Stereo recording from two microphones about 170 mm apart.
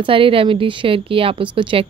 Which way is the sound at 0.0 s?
30° right (ahead or behind).